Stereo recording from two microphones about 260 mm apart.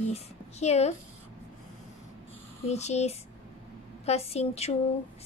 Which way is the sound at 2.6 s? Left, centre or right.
Left.